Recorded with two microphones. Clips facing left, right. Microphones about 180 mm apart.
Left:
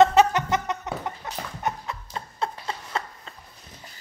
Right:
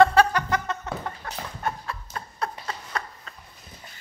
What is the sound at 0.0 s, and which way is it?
Chicken, 20° left (ahead or behind).